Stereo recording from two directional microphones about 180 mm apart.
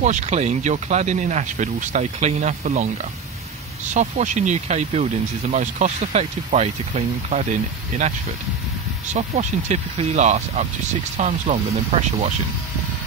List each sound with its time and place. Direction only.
0.0 s speech: 40° right (ahead or behind)
9.1 s speech: 40° right (ahead or behind)